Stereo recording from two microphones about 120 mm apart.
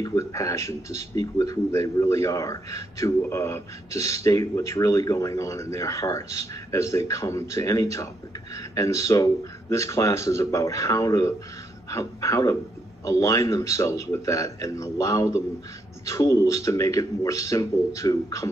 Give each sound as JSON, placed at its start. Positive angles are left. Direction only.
{"t": 0.0, "sound": "speech", "side_deg": 25}